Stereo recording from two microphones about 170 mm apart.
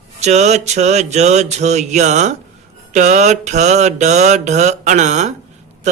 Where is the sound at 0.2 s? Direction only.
40° right (ahead or behind).